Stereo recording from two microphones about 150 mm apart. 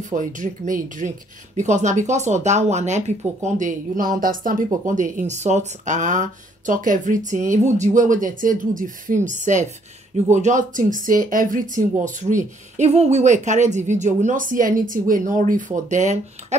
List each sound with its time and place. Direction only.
0.1 s speech: 60° right (ahead or behind)